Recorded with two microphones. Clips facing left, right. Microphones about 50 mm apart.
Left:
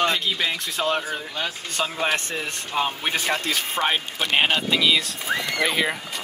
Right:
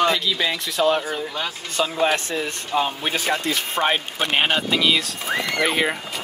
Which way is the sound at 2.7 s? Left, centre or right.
Centre.